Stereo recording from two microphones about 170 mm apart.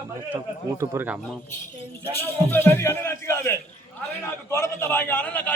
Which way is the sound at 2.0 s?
10° left (ahead or behind).